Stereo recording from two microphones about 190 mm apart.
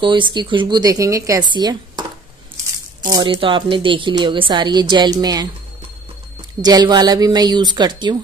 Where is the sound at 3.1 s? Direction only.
25° right (ahead or behind).